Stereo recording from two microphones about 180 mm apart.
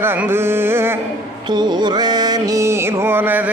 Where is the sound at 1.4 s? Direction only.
25° right (ahead or behind).